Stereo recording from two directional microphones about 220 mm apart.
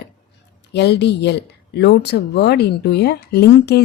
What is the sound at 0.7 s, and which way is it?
A woman's voice, 50° left (ahead or behind).